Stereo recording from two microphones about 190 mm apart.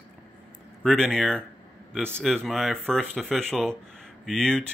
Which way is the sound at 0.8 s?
Centre (ahead or behind).